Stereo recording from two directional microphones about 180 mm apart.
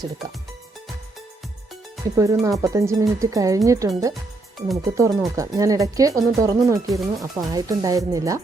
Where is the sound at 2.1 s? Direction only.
20° right (ahead or behind).